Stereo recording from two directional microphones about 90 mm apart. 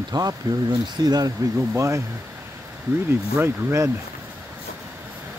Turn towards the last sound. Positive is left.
turn(degrees=-30)  # may be behind; listen again after turning